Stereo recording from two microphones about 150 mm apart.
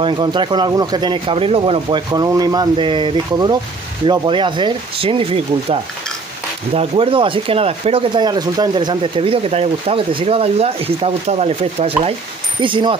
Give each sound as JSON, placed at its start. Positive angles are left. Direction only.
{"t": 0.0, "sound": "speech", "side_deg": -30}
{"t": 12.6, "sound": "speech", "side_deg": -35}